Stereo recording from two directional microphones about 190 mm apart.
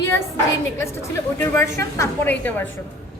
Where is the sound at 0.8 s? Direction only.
15° left (ahead or behind).